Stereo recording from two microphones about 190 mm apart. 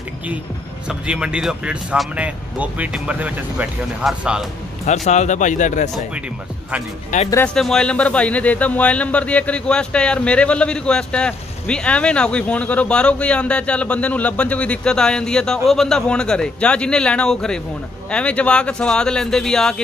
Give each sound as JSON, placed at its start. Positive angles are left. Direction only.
{"t": 0.8, "sound": "speech", "side_deg": -5}
{"t": 4.8, "sound": "speech", "side_deg": 35}
{"t": 7.1, "sound": "speech", "side_deg": 40}
{"t": 7.4, "sound": "speech", "side_deg": 5}